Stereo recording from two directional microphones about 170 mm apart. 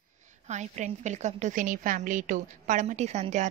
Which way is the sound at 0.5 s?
45° right (ahead or behind).